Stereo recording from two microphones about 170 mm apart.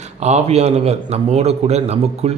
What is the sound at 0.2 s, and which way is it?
A man's voice, 40° right (ahead or behind).